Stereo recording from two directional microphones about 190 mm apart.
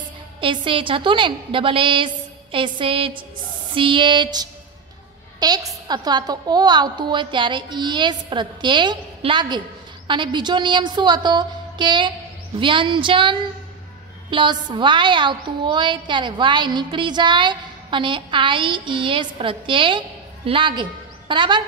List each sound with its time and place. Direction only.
0.4 s a woman's voice: 25° right (ahead or behind)